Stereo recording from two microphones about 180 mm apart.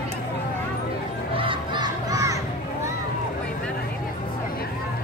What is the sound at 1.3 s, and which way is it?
Crowd, 25° right (ahead or behind).